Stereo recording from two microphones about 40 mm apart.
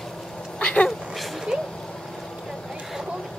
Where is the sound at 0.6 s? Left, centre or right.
Left.